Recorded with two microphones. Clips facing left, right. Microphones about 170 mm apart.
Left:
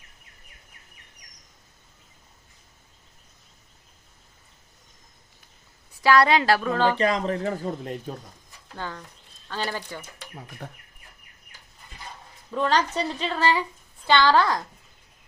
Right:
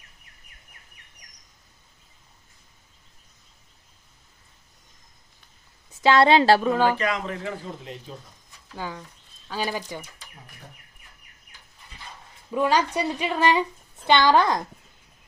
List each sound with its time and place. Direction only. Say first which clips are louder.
5.9 s a woman's voice: right 2 dB; 20° right (ahead or behind)
7.0 s speech: left 4 dB; 35° left (ahead or behind)
8.7 s speech: right 1 dB; 10° right (ahead or behind)
10.2 s speech: left 8 dB; 70° left (ahead or behind)
12.5 s a woman's voice: right 1 dB; 10° right (ahead or behind)